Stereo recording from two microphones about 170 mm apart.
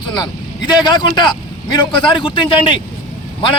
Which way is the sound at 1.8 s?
30° left (ahead or behind).